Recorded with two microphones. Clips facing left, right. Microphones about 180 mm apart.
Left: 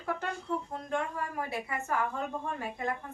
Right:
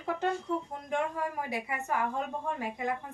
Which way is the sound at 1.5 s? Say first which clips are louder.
Right 1 dB; 15° right (ahead or behind).